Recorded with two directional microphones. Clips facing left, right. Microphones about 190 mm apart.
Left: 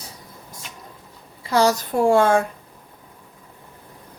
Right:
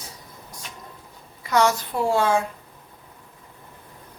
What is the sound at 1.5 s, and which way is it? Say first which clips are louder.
Speech: left 2 dB; 30° left (ahead or behind).